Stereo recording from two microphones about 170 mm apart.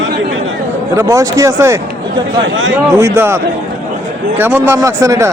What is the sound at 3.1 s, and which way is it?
Speech, 15° right (ahead or behind).